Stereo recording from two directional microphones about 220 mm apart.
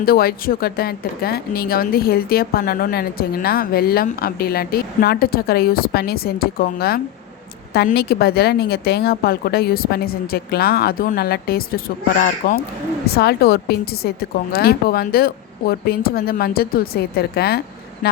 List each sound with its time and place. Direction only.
0.0 s speech: 45° left (ahead or behind)